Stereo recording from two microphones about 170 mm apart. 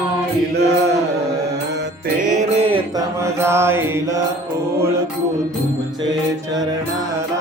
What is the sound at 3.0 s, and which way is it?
Mantra, 15° right (ahead or behind).